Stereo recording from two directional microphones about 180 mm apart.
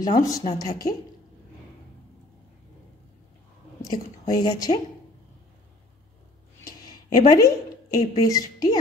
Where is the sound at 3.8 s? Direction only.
20° left (ahead or behind).